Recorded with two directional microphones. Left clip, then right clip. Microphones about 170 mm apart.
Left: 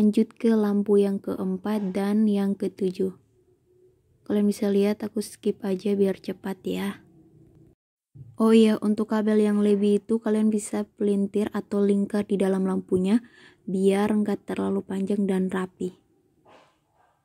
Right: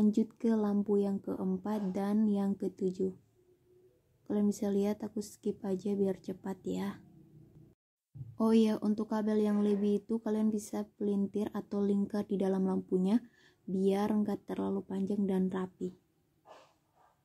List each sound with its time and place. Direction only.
0.0 s speech: 25° left (ahead or behind)
4.3 s speech: 25° left (ahead or behind)
8.4 s speech: 25° left (ahead or behind)